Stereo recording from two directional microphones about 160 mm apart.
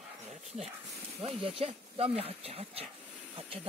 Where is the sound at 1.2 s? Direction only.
35° right (ahead or behind).